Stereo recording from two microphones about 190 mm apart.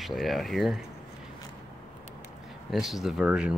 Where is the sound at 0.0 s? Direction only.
Centre (ahead or behind).